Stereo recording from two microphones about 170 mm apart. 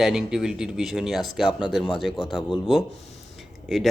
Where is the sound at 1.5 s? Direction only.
30° left (ahead or behind).